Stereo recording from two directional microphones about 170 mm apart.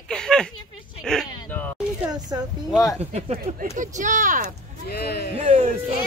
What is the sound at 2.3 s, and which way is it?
Speech, 20° right (ahead or behind).